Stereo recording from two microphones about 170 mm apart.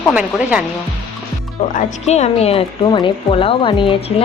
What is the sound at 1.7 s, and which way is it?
Speech, 45° left (ahead or behind).